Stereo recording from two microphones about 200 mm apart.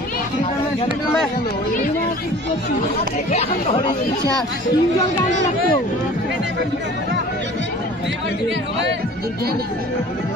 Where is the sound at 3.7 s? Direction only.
20° left (ahead or behind).